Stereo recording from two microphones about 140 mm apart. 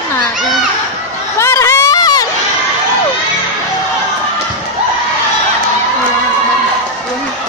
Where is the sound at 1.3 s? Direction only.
20° left (ahead or behind).